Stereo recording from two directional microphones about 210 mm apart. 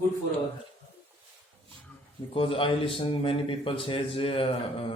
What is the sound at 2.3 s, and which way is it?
Speech, 25° left (ahead or behind).